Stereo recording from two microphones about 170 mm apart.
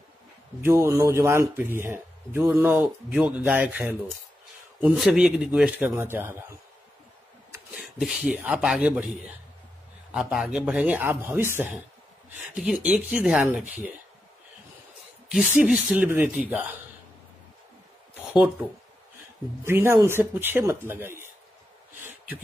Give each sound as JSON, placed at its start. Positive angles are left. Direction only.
{"t": 0.7, "sound": "a man's voice", "side_deg": -15}
{"t": 4.9, "sound": "a man's voice", "side_deg": 0}
{"t": 7.7, "sound": "a man's voice", "side_deg": -5}
{"t": 15.2, "sound": "a man's voice", "side_deg": -5}
{"t": 18.3, "sound": "a man's voice", "side_deg": -10}